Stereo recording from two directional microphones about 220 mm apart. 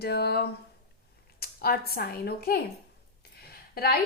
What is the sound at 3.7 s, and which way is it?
Speech, 45° left (ahead or behind).